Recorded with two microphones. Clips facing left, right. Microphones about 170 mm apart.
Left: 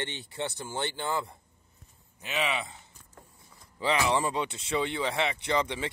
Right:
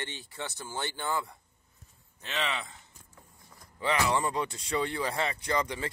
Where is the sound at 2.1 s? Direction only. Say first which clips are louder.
Left 3 dB; 10° left (ahead or behind).